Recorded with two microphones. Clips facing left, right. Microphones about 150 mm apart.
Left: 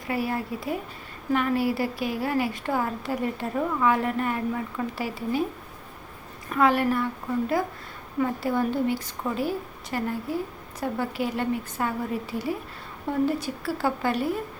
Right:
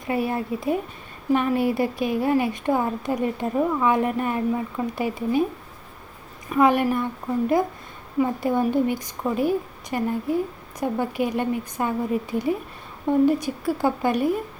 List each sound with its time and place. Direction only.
0.1 s a woman's voice: 25° right (ahead or behind)
6.5 s a woman's voice: 20° right (ahead or behind)